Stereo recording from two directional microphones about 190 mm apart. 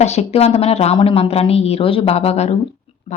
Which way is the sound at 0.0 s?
35° left (ahead or behind).